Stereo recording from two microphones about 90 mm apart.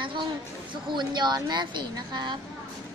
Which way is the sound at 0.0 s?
65° right (ahead or behind).